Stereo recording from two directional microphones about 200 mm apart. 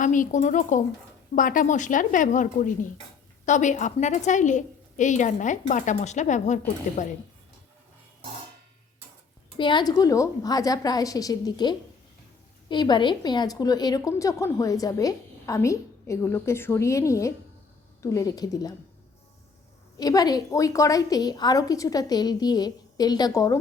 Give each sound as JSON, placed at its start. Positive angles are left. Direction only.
{"t": 0.0, "sound": "a woman's voice", "side_deg": 40}
{"t": 9.6, "sound": "a woman's voice", "side_deg": 25}
{"t": 20.0, "sound": "a woman's voice", "side_deg": 20}